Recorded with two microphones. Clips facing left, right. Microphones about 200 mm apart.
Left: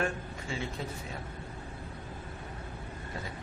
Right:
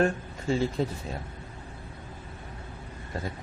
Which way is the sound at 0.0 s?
35° right (ahead or behind).